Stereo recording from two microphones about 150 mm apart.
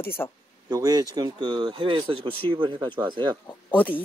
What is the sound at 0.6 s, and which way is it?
Speech, 25° right (ahead or behind).